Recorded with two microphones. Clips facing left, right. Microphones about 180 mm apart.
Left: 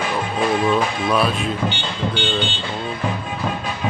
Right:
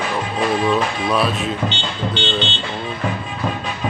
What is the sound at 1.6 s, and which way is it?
Music, 10° left (ahead or behind).